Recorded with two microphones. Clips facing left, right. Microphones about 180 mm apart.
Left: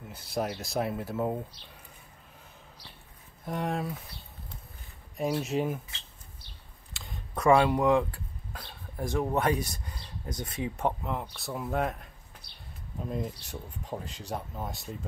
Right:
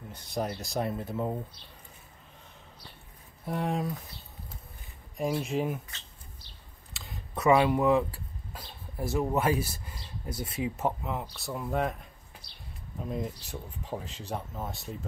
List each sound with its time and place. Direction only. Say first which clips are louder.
0.1 s speech: left 1 dB; 5° left (ahead or behind)
3.4 s speech: right 1 dB; centre (ahead or behind)
5.1 s speech: left 1 dB; centre (ahead or behind)
6.9 s camera: even; centre (ahead or behind)
8.5 s speech: even; 5° right (ahead or behind)